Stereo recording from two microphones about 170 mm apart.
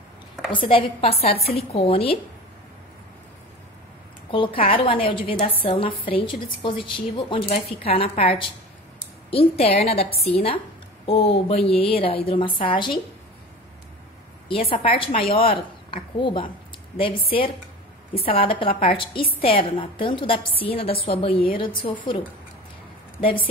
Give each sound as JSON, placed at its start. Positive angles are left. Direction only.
{"t": 0.5, "sound": "a woman's voice", "side_deg": 30}
{"t": 4.3, "sound": "a woman's voice", "side_deg": 30}
{"t": 14.5, "sound": "a woman's voice", "side_deg": 35}